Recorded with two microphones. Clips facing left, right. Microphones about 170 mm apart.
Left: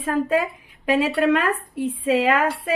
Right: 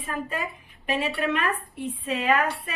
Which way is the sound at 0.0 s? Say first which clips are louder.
Left 10 dB; 90° left.